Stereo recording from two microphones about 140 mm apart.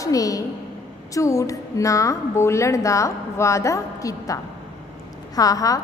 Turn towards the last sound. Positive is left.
turn(degrees=25)  # may be behind; listen again after turning